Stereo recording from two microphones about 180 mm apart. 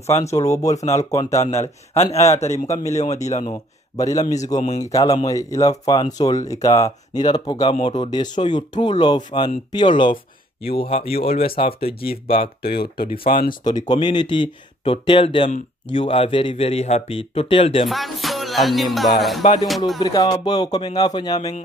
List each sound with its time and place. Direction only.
0.0 s speech: 35° left (ahead or behind)
0.3 s speech: 15° left (ahead or behind)
1.5 s speech: 35° left (ahead or behind)
2.0 s speech: 15° left (ahead or behind)
2.3 s speech: 40° left (ahead or behind)
2.7 s speech: 15° left (ahead or behind)
3.3 s speech: 40° left (ahead or behind)
3.9 s speech: 20° left (ahead or behind)
12.6 s speech: 60° left (ahead or behind)
13.7 s speech: 25° left (ahead or behind)
17.8 s music: centre (ahead or behind)
20.0 s speech: 20° left (ahead or behind)